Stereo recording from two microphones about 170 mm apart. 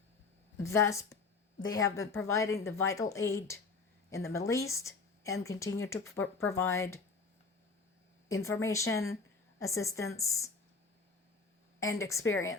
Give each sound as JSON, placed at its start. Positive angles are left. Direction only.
{"t": 0.5, "sound": "a woman's voice", "side_deg": 15}
{"t": 8.3, "sound": "a woman's voice", "side_deg": 15}
{"t": 11.8, "sound": "a woman's voice", "side_deg": 20}